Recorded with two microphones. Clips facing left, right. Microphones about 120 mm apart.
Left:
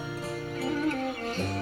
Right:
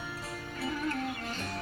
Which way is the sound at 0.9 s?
45° left (ahead or behind).